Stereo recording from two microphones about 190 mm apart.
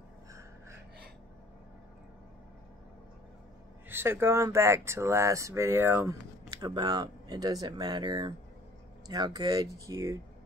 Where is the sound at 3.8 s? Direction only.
10° right (ahead or behind).